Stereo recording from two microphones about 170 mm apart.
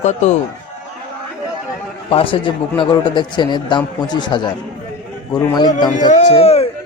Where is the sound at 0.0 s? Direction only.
45° left (ahead or behind).